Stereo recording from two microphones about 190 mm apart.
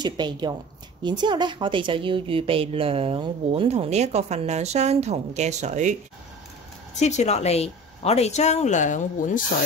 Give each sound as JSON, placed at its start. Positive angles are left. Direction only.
{"t": 0.0, "sound": "a woman's voice", "side_deg": -25}
{"t": 7.0, "sound": "speech", "side_deg": 35}